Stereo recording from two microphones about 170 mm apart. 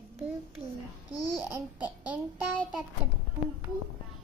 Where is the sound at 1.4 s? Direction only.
15° right (ahead or behind).